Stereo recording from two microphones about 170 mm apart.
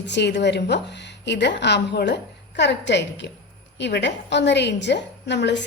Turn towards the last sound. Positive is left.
turn(degrees=90)